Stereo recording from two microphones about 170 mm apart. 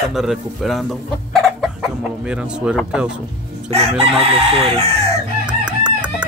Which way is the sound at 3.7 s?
35° right (ahead or behind).